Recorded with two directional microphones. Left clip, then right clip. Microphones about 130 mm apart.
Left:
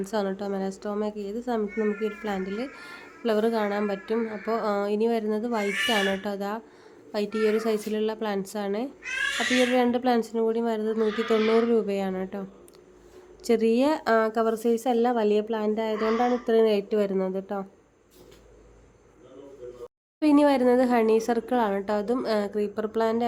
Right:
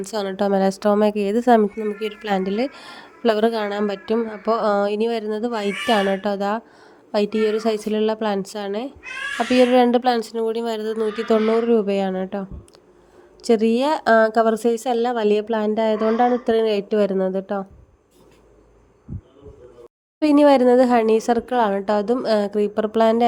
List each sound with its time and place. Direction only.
0.0 s a woman's voice: 70° right (ahead or behind); by 17.7 s 35° right (ahead or behind)
20.1 s a woman's voice: 40° right (ahead or behind)